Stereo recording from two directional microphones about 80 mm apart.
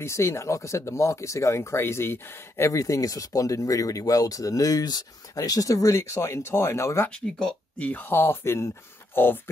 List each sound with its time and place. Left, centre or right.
0.0 s speech: left
2.7 s speech: left
7.1 s speech: centre
7.9 s speech: left